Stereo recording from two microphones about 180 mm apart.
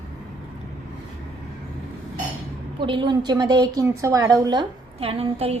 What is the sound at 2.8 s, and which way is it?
A woman's voice, 25° right (ahead or behind).